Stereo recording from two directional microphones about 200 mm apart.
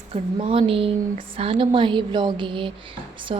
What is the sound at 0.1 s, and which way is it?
A woman's voice, 25° right (ahead or behind).